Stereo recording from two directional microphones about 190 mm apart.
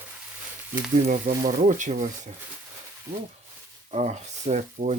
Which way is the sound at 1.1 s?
45° right (ahead or behind).